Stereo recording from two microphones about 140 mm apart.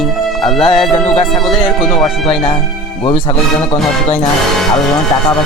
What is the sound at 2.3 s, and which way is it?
Speech, 40° left (ahead or behind).